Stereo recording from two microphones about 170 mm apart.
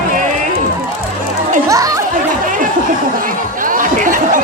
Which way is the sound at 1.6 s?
20° right (ahead or behind).